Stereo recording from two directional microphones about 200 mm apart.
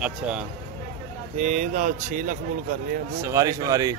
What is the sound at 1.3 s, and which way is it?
Speech, 35° right (ahead or behind).